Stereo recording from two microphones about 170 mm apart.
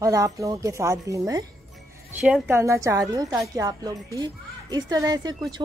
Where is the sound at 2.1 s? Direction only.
10° right (ahead or behind).